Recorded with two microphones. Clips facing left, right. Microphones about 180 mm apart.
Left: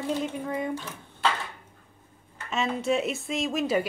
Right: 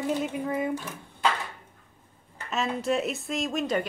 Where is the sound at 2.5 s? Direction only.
Centre (ahead or behind).